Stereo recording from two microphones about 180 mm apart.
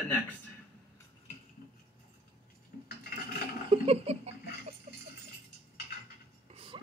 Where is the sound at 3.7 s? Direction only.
35° right (ahead or behind).